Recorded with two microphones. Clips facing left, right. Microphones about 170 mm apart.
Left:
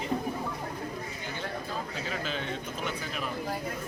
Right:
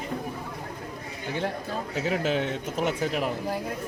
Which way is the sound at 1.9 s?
75° right (ahead or behind).